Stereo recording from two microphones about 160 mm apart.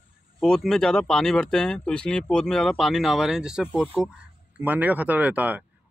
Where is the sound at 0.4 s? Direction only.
5° left (ahead or behind).